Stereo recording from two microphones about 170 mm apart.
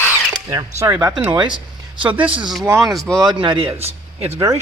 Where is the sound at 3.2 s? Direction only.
30° right (ahead or behind).